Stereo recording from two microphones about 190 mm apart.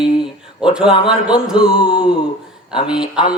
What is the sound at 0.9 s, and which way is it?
Speech, 25° left (ahead or behind).